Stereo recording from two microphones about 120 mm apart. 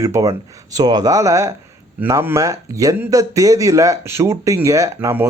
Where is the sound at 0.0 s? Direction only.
25° right (ahead or behind).